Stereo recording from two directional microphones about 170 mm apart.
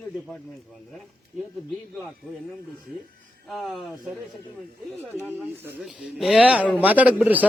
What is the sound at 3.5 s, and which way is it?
Speech, centre (ahead or behind).